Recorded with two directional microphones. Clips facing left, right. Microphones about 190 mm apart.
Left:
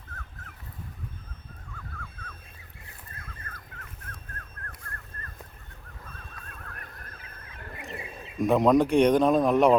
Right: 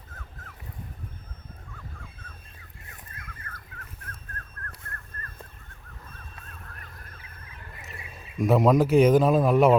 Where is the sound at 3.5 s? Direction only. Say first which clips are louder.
Right 1 dB; 40° left (ahead or behind).